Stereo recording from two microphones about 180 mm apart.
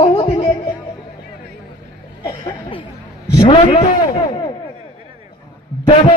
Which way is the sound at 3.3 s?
30° left (ahead or behind).